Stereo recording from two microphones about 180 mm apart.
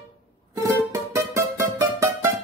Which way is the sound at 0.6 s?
15° right (ahead or behind).